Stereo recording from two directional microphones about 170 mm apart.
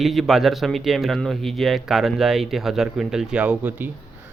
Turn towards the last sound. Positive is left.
turn(degrees=-10)  # may be behind; listen again after turning